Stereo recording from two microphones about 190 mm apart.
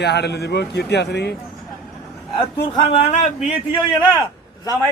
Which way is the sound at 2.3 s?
25° left (ahead or behind).